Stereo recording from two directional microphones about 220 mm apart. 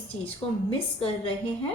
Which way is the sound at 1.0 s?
25° left (ahead or behind).